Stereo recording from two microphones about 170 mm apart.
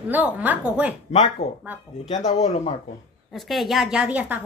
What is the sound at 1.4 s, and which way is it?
A man's voice, 40° left (ahead or behind).